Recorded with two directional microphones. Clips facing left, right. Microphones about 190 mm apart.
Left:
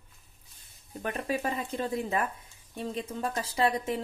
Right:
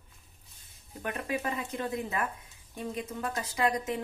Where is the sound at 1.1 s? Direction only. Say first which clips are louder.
Left 2 dB; 30° left (ahead or behind).